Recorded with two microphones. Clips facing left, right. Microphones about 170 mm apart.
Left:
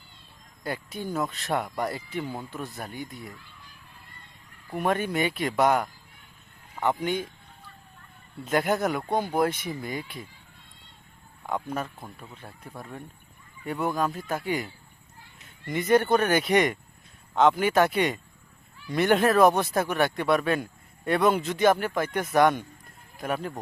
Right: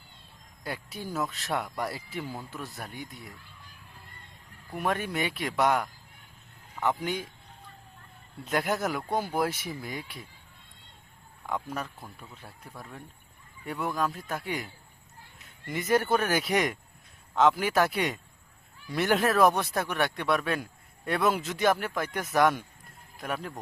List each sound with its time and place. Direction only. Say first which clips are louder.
0.6 s speech: left 4 dB; centre (ahead or behind)
2.2 s speech: left 4 dB; 25° left (ahead or behind)
2.5 s speech: left 4 dB; centre (ahead or behind)
4.8 s speech: left 4 dB; centre (ahead or behind)
8.4 s speech: left 4 dB; centre (ahead or behind)
11.4 s a man's voice: left 3 dB; centre (ahead or behind)